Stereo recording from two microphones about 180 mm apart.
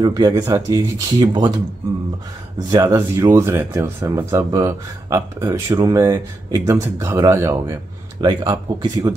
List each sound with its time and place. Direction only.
0.0 s speech: 20° right (ahead or behind)
2.7 s speech: 20° right (ahead or behind)